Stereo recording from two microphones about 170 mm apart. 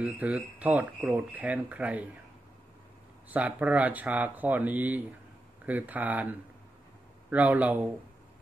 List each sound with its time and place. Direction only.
0.0 s speech: 10° right (ahead or behind)
3.3 s speech: 10° right (ahead or behind)
7.2 s speech: 10° right (ahead or behind)